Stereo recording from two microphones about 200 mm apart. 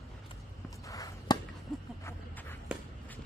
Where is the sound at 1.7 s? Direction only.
Centre (ahead or behind).